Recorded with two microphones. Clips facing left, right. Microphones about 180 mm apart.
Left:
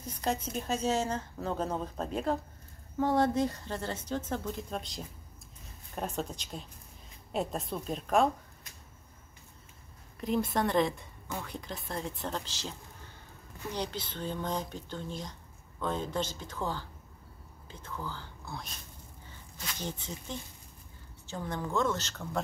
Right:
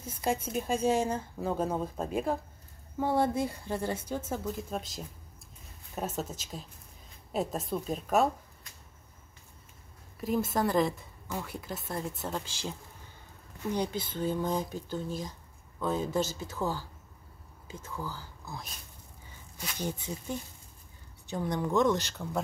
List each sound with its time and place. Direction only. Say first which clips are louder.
0.0 s a woman's voice: right 2 dB; 10° right (ahead or behind)
10.2 s a woman's voice: right 1 dB; 5° right (ahead or behind)
13.7 s speech: right 5 dB; 10° right (ahead or behind)